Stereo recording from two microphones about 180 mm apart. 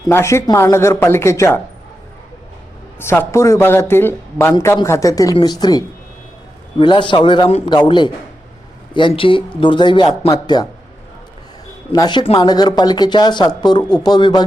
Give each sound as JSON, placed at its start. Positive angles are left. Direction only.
{"t": 0.1, "sound": "speech", "side_deg": 15}
{"t": 3.0, "sound": "speech", "side_deg": 15}
{"t": 11.9, "sound": "speech", "side_deg": 25}